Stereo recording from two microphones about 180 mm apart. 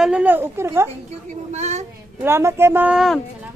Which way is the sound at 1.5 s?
40° right (ahead or behind).